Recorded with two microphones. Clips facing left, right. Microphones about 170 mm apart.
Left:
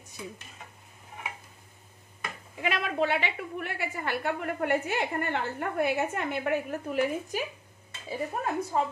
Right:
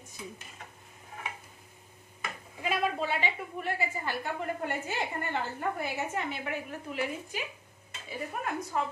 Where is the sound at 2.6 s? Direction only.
70° left (ahead or behind); by 7.4 s 45° left (ahead or behind).